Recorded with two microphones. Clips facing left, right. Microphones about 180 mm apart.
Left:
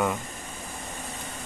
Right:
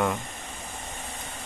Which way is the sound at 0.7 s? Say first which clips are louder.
Left 2 dB; 45° left (ahead or behind).